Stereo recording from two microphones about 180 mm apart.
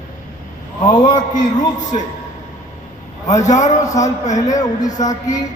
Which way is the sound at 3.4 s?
40° left (ahead or behind).